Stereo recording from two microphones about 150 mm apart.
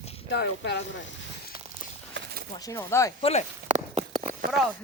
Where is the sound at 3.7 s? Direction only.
50° right (ahead or behind).